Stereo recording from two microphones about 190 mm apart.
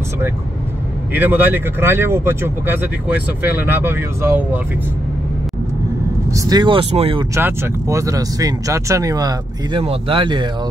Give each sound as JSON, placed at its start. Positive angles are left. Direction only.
{"t": 1.1, "sound": "speech", "side_deg": -10}
{"t": 6.3, "sound": "speech", "side_deg": -20}
{"t": 7.3, "sound": "speech", "side_deg": -15}